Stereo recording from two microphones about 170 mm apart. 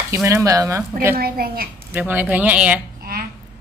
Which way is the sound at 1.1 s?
60° right (ahead or behind).